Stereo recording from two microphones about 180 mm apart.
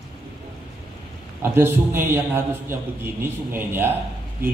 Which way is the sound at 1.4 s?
15° right (ahead or behind).